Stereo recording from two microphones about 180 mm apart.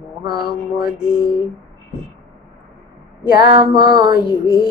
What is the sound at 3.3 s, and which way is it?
Mantra, 25° right (ahead or behind).